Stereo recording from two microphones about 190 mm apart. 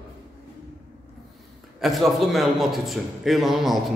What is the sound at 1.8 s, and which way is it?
A man's voice, centre (ahead or behind).